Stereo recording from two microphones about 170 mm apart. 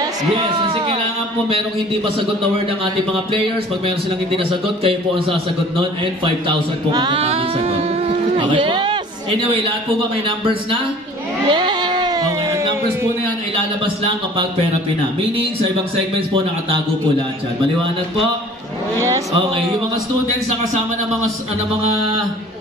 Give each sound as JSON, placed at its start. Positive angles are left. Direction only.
{"t": 0.7, "sound": "speech", "side_deg": -30}
{"t": 4.4, "sound": "speech", "side_deg": -30}
{"t": 11.4, "sound": "a sound", "side_deg": -25}
{"t": 18.9, "sound": "speech", "side_deg": -20}
{"t": 21.8, "sound": "speech", "side_deg": -30}